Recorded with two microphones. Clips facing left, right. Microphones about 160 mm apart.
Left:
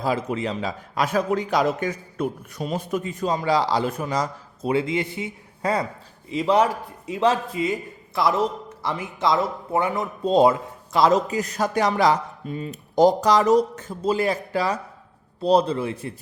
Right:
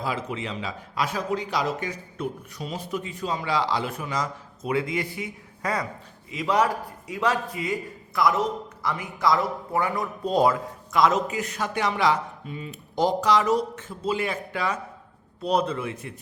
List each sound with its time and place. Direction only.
0.0 s a man's voice: 40° left (ahead or behind)